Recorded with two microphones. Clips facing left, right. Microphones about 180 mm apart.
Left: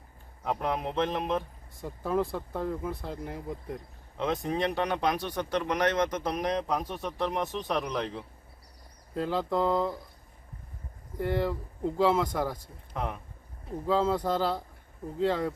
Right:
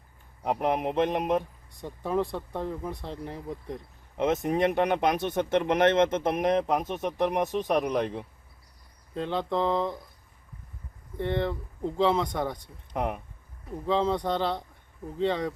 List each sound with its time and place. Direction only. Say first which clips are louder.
0.4 s a sound: right 4 dB; 15° right (ahead or behind)
1.7 s speech: right 1 dB; centre (ahead or behind)
4.2 s speech: right 4 dB; 20° right (ahead or behind)
9.1 s speech: even; 5° left (ahead or behind)
11.2 s speech: even; 5° left (ahead or behind)
12.9 s a sound: right 4 dB; 15° right (ahead or behind)
13.8 s speech: right 1 dB; 5° left (ahead or behind)